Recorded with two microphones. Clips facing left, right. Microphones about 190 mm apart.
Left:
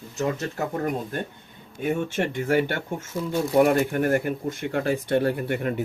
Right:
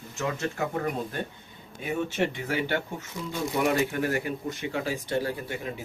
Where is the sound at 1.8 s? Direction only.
50° left (ahead or behind).